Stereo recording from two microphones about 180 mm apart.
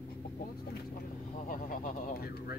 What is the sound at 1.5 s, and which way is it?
Speech, 50° left (ahead or behind).